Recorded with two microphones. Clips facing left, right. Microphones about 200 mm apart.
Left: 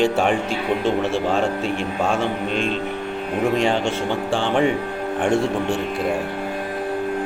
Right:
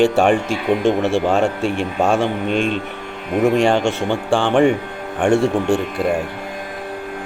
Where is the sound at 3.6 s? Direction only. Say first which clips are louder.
Right 4 dB; 75° right (ahead or behind).